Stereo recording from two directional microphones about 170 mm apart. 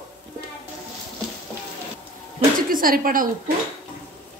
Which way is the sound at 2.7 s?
55° right (ahead or behind).